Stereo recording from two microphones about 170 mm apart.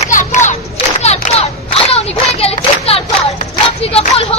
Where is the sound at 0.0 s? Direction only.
45° left (ahead or behind).